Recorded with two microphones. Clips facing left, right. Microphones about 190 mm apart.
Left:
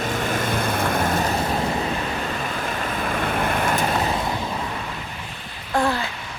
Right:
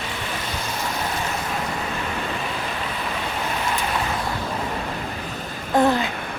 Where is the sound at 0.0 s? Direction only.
45° left (ahead or behind).